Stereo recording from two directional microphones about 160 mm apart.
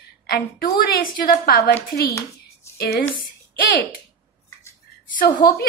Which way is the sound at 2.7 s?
90° left.